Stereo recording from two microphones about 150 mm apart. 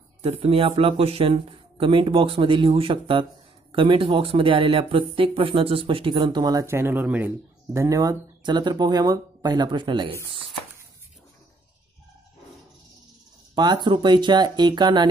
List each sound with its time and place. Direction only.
0.2 s speech: 40° right (ahead or behind); by 7.3 s 10° right (ahead or behind)
7.7 s speech: 20° right (ahead or behind)
13.6 s speech: 30° right (ahead or behind)